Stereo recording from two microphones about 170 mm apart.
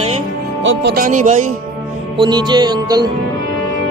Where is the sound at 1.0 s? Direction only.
45° right (ahead or behind).